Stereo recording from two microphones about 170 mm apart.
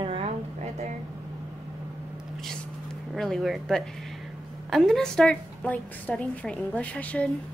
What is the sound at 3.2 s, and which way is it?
A woman's voice, centre (ahead or behind).